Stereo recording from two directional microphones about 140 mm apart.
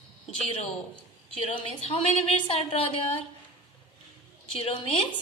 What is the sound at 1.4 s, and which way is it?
A woman's voice, 40° left (ahead or behind).